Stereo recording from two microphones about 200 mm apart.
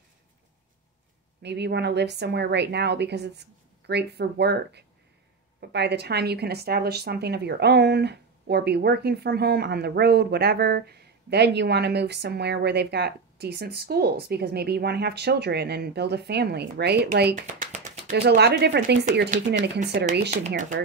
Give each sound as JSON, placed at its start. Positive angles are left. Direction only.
{"t": 1.4, "sound": "a woman's voice", "side_deg": -55}
{"t": 17.7, "sound": "a sound", "side_deg": -40}
{"t": 18.1, "sound": "a woman's voice", "side_deg": -55}
{"t": 20.1, "sound": "speech", "side_deg": -45}